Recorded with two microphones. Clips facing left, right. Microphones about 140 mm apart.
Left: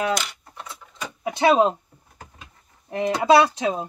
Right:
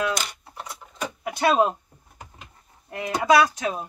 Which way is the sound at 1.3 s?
25° left (ahead or behind).